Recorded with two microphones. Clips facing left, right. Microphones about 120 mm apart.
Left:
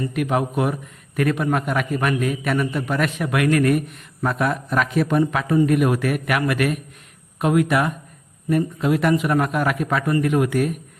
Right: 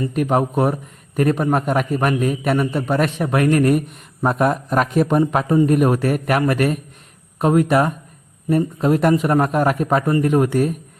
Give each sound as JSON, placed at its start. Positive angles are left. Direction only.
{"t": 0.1, "sound": "a man's voice", "side_deg": -35}